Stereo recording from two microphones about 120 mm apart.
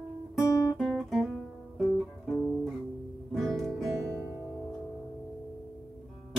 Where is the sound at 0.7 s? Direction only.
Centre (ahead or behind).